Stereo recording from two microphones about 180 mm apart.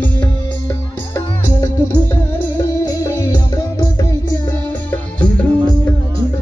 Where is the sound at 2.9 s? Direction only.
15° left (ahead or behind).